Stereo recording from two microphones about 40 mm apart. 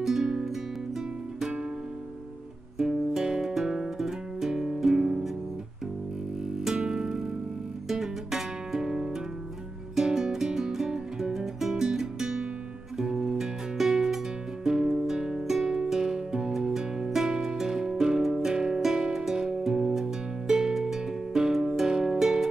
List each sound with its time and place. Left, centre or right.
0.0 s music: centre
2.8 s music: centre
6.6 s music: centre